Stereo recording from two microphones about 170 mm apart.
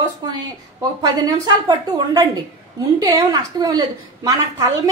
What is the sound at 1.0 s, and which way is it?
A woman's voice, 25° right (ahead or behind).